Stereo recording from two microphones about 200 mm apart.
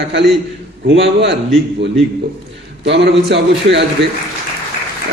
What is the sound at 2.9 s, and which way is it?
Speech, 60° right (ahead or behind).